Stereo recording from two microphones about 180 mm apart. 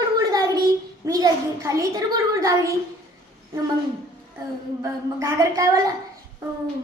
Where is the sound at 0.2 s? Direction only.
20° right (ahead or behind).